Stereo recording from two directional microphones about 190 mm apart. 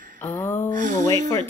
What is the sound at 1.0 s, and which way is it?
Music, 20° left (ahead or behind).